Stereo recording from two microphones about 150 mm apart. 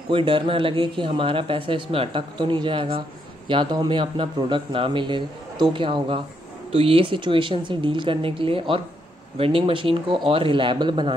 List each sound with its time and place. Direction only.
0.1 s speech: 35° right (ahead or behind)